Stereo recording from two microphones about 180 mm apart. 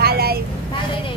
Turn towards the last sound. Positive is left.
turn(degrees=-60)  # may be behind; listen again after turning